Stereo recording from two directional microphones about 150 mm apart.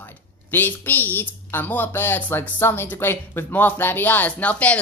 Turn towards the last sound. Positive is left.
turn(degrees=10)  # may be behind; listen again after turning